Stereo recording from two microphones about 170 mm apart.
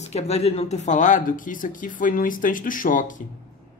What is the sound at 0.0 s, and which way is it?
A woman's voice, 40° left (ahead or behind).